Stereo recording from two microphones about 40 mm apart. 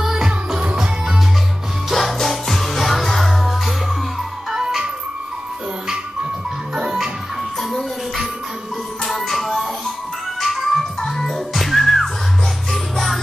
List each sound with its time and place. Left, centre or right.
0.0 s music: centre
1.9 s music: centre
4.5 s ice cream truck: centre
6.7 s music: centre
9.0 s music: centre